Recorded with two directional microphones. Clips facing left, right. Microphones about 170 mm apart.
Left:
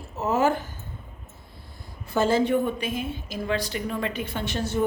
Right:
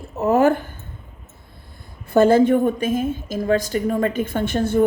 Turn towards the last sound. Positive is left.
turn(degrees=-55)  # may be behind; listen again after turning